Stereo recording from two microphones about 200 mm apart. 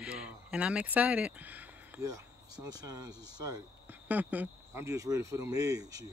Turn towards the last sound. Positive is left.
turn(degrees=-15)  # may be behind; listen again after turning